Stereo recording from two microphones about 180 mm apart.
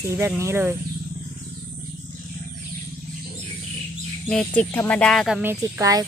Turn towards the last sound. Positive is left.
turn(degrees=-20)  # may be behind; listen again after turning